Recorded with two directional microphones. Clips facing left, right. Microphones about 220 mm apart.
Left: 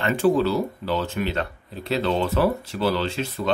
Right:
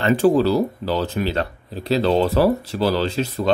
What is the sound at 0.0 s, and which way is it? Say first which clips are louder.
Speech: right 4 dB; 35° right (ahead or behind).